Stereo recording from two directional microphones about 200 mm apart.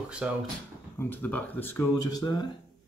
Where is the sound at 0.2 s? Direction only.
5° right (ahead or behind).